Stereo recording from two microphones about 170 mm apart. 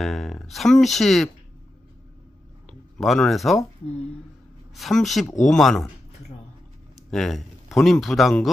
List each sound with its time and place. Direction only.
0.0 s speech: centre (ahead or behind)
2.6 s speech: 5° left (ahead or behind)
4.7 s speech: centre (ahead or behind)
7.1 s a man's voice: centre (ahead or behind)